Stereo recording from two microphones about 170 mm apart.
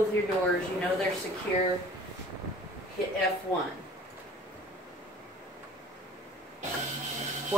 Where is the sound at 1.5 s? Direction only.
10° left (ahead or behind).